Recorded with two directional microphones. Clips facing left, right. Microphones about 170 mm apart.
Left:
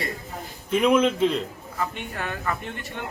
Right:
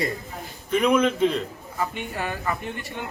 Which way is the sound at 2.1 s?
10° right (ahead or behind).